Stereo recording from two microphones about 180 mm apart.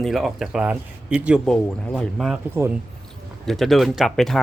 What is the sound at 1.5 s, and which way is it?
Speech, 5° left (ahead or behind).